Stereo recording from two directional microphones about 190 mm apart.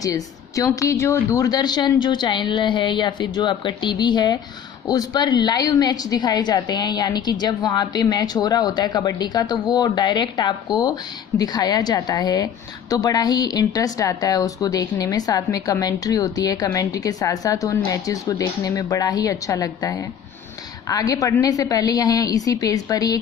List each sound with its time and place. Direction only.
0.0 s a woman's voice: 15° left (ahead or behind)